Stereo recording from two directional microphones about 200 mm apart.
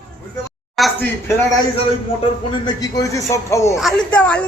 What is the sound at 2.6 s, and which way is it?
A man's voice, 20° left (ahead or behind).